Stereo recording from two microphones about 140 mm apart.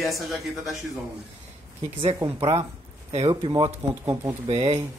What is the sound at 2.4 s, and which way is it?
Speech, 45° right (ahead or behind).